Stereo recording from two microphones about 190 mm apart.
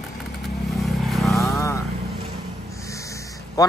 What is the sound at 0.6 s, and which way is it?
Vehicle, centre (ahead or behind).